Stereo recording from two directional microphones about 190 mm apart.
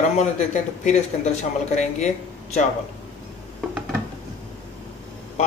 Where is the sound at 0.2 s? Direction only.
35° left (ahead or behind).